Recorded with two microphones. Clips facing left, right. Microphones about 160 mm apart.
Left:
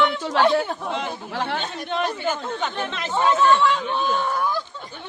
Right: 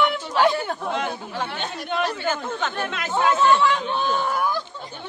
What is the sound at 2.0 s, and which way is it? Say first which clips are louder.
Speech: even; 15° left (ahead or behind).